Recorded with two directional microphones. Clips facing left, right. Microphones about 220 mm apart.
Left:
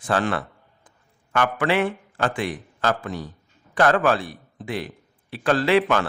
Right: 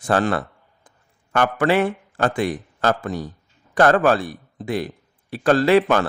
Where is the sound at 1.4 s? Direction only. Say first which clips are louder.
Right 3 dB; 45° right (ahead or behind).